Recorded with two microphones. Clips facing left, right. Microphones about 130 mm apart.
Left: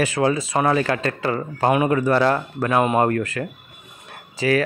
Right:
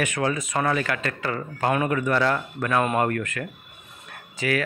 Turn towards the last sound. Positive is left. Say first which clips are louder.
# left 6 dB
turn(degrees=35)  # may be behind; listen again after turning